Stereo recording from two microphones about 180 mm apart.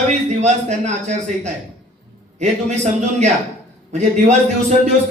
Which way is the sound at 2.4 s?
40° right (ahead or behind).